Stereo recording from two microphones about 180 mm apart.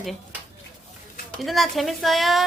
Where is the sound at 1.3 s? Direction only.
Centre (ahead or behind).